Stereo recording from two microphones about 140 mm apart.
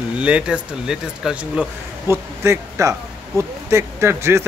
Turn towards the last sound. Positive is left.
turn(degrees=-20)  # may be behind; listen again after turning